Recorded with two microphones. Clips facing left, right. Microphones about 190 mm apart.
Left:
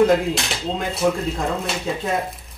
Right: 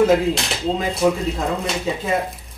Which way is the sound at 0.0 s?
Centre (ahead or behind).